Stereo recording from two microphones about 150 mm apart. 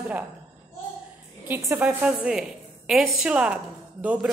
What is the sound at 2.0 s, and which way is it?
A woman's voice, 5° right (ahead or behind).